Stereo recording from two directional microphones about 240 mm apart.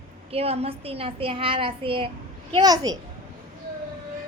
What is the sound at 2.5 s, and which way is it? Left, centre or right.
Child singing, centre.